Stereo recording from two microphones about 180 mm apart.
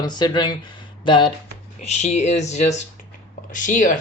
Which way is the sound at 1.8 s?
40° left (ahead or behind).